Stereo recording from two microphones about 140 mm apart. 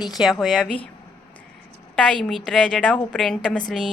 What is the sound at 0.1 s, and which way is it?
Speech, centre (ahead or behind).